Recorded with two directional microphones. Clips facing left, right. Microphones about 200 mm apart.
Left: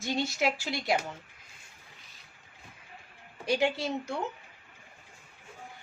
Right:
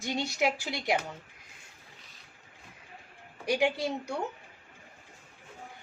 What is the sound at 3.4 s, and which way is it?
Speech, 15° right (ahead or behind).